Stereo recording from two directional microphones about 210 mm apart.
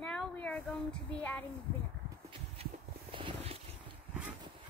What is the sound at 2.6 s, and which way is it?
Walk, 30° right (ahead or behind).